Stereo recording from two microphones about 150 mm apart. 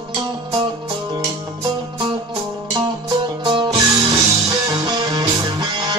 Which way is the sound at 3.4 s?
30° right (ahead or behind).